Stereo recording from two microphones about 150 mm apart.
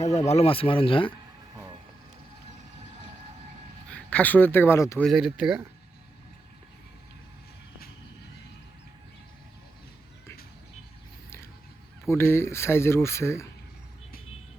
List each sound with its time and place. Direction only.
0.3 s speech: 40° left (ahead or behind)
3.9 s speech: 10° left (ahead or behind)
5.0 s speech: 5° right (ahead or behind)
12.0 s speech: 15° left (ahead or behind)